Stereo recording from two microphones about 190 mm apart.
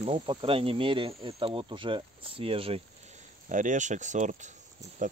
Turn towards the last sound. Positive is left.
turn(degrees=-45)  # may be behind; listen again after turning